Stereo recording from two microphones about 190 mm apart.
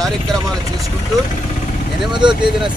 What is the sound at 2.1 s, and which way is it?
Speech, 25° right (ahead or behind).